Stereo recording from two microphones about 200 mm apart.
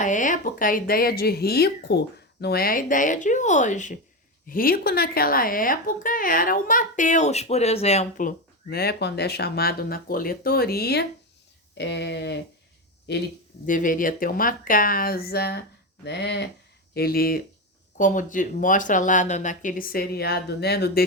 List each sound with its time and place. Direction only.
0.0 s speech: 40° left (ahead or behind); by 13.2 s 55° left (ahead or behind)
13.7 s speech: 40° left (ahead or behind)